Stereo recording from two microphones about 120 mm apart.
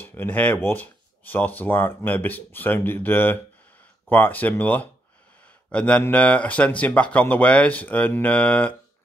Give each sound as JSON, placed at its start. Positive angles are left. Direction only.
{"t": 0.0, "sound": "speech", "side_deg": 15}